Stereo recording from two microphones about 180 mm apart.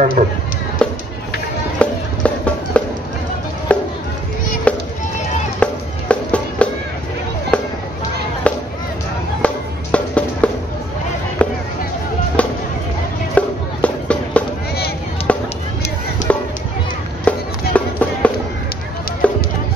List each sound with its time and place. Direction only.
0.2 s speech: 40° right (ahead or behind)
1.8 s music: 5° left (ahead or behind)
7.5 s a sound: 5° left (ahead or behind)
8.5 s music: 5° left (ahead or behind)
11.4 s a sound: 10° left (ahead or behind)
12.4 s music: 5° left (ahead or behind)
15.3 s a sound: 5° left (ahead or behind)
16.3 s music: 10° left (ahead or behind)
18.2 s chop: 5° left (ahead or behind)
19.2 s music: 5° left (ahead or behind)